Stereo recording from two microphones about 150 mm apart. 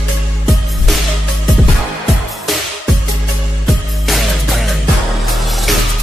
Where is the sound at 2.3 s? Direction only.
Centre (ahead or behind).